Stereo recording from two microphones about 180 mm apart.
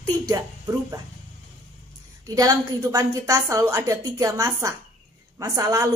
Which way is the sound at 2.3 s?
20° right (ahead or behind).